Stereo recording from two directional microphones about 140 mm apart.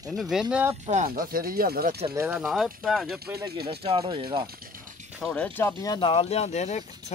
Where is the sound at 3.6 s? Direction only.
40° right (ahead or behind).